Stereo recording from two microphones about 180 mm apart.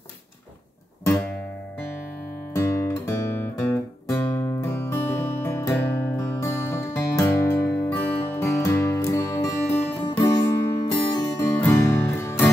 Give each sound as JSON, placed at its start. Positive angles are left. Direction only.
{"t": 2.5, "sound": "guitar", "side_deg": 15}
{"t": 10.2, "sound": "music", "side_deg": 20}